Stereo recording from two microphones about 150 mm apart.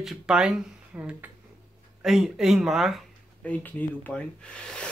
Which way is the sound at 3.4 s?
10° left (ahead or behind).